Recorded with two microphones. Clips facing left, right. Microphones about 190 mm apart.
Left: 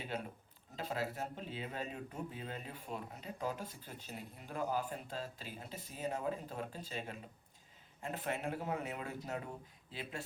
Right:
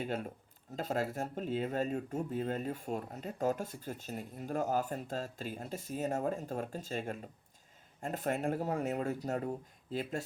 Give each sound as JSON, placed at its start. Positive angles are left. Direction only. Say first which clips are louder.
{"t": 0.8, "sound": "speech", "louder": "right 5 dB", "side_deg": -45}